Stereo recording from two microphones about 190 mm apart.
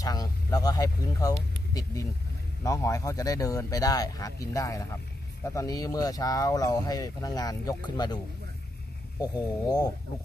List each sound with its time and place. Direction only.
0.0 s speech: 20° left (ahead or behind)
9.2 s speech: 20° left (ahead or behind)